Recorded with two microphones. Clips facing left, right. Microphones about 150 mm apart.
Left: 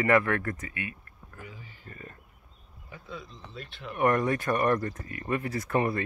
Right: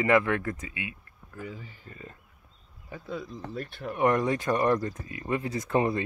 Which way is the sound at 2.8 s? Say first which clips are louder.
Right 6 dB; 40° right (ahead or behind).